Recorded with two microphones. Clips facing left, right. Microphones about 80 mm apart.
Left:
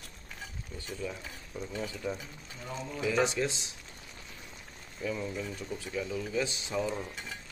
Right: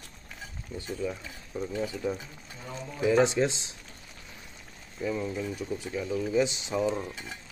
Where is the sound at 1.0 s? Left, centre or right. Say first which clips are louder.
Right 5 dB; centre.